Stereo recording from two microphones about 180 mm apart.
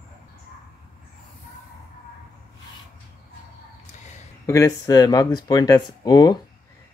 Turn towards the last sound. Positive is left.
turn(degrees=20)  # may be behind; listen again after turning